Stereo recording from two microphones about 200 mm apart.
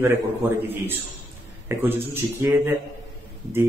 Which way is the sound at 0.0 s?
10° right (ahead or behind).